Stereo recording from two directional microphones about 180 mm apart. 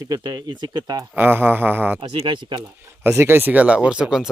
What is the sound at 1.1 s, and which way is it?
Speech, 10° right (ahead or behind).